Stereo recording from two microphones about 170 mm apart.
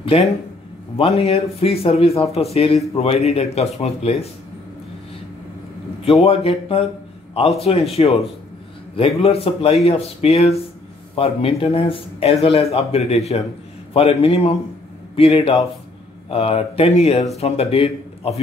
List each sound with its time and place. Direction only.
0.1 s speech: 35° left (ahead or behind)
6.0 s speech: 35° left (ahead or behind)
16.3 s a man's voice: 35° left (ahead or behind)